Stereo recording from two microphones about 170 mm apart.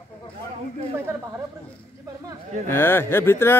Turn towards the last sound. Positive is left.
turn(degrees=15)  # may be behind; listen again after turning